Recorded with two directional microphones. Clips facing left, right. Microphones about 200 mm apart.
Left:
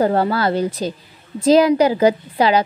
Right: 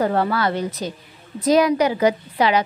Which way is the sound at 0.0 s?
35° left (ahead or behind).